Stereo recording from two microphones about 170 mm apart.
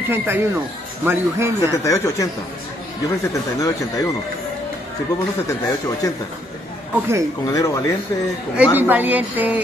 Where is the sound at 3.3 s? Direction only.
20° left (ahead or behind).